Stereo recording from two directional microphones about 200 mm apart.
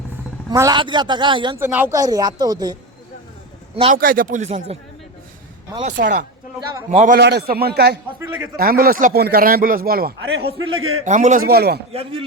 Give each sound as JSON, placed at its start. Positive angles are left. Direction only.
{"t": 0.5, "sound": "speech", "side_deg": -20}
{"t": 1.5, "sound": "speech", "side_deg": -10}
{"t": 3.9, "sound": "speech", "side_deg": -45}
{"t": 6.0, "sound": "speech", "side_deg": -45}
{"t": 7.2, "sound": "speech", "side_deg": -55}
{"t": 8.2, "sound": "a man's voice", "side_deg": -10}
{"t": 8.5, "sound": "speech", "side_deg": -45}
{"t": 10.6, "sound": "a man's voice", "side_deg": -90}
{"t": 11.0, "sound": "speech", "side_deg": -35}